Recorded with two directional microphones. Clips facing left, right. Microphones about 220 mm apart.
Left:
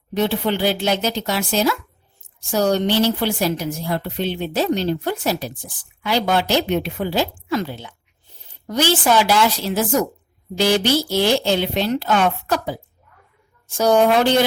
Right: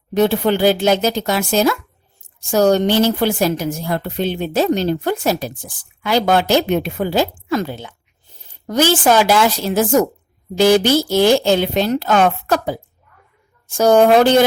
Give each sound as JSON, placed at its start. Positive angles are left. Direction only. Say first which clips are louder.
{"t": 0.1, "sound": "a woman's voice", "louder": "right 5 dB", "side_deg": -45}